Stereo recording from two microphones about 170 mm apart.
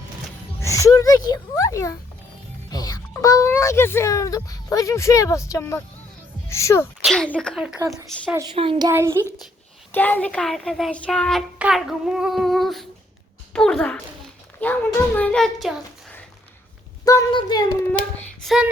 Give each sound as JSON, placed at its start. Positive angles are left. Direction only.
{"t": 0.6, "sound": "a child's voice", "side_deg": 20}
{"t": 7.0, "sound": "speech", "side_deg": 5}
{"t": 7.8, "sound": "speech", "side_deg": -20}
{"t": 8.5, "sound": "a child's voice", "side_deg": -35}
{"t": 8.9, "sound": "a child's voice", "side_deg": -15}
{"t": 9.9, "sound": "a child's voice", "side_deg": 10}
{"t": 17.1, "sound": "speech", "side_deg": 20}
{"t": 18.4, "sound": "speech", "side_deg": -5}